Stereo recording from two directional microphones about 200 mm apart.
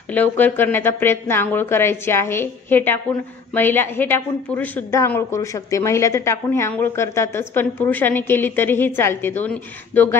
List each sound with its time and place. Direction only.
0.1 s a woman's voice: 10° left (ahead or behind)